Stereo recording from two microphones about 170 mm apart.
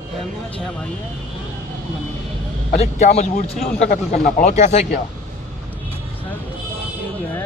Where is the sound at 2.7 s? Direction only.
40° left (ahead or behind).